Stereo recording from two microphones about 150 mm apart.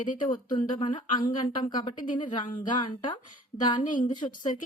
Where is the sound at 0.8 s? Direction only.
30° left (ahead or behind).